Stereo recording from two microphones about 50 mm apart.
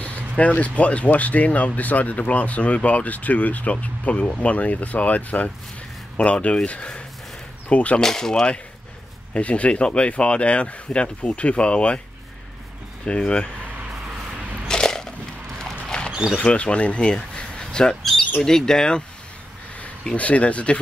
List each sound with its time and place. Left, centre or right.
0.0 s speech: left
8.0 s speech: centre
9.3 s speech: left
13.0 s speech: centre
14.7 s a sound: centre
15.6 s creak: centre
16.1 s a sound: centre
16.3 s speech: left
19.8 s speech: left